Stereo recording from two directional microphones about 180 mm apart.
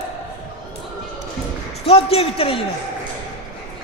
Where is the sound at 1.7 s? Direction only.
35° left (ahead or behind).